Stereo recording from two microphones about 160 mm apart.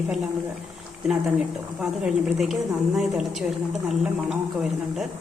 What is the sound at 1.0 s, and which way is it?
A woman's voice, 5° right (ahead or behind).